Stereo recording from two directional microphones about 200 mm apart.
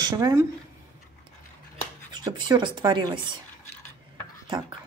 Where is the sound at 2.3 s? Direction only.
20° right (ahead or behind).